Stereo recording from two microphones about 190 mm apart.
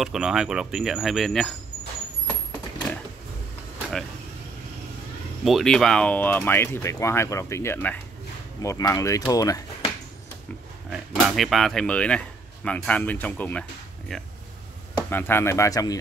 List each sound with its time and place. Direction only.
0.0 s speech: 5° right (ahead or behind)
5.4 s speech: centre (ahead or behind); by 9.6 s 20° left (ahead or behind)
10.9 s speech: centre (ahead or behind); by 16.0 s 20° left (ahead or behind)